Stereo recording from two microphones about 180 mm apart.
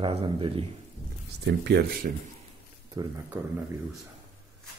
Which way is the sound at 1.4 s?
70° right (ahead or behind).